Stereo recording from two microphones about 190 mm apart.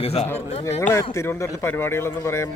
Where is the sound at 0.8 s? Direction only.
15° left (ahead or behind).